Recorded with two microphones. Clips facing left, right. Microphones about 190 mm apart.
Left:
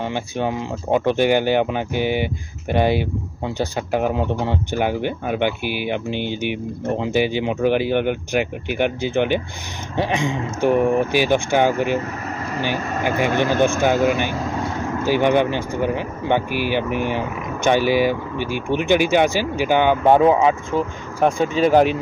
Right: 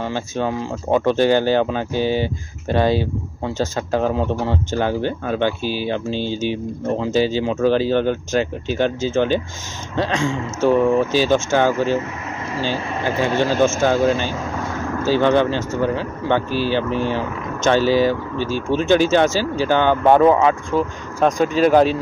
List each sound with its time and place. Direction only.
0.0 s speech: 20° left (ahead or behind)
13.7 s speech: 15° left (ahead or behind)